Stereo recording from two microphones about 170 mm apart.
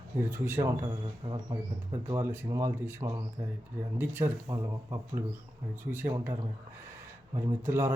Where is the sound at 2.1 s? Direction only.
15° right (ahead or behind).